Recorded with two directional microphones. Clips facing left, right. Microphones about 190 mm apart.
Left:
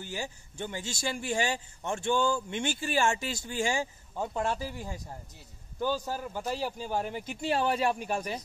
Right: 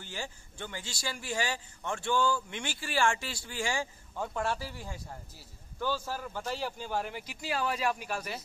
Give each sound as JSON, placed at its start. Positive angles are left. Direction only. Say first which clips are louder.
{"t": 0.0, "sound": "a man's voice", "louder": "left 4 dB", "side_deg": 15}
{"t": 8.1, "sound": "a man's voice", "louder": "left 4 dB", "side_deg": 15}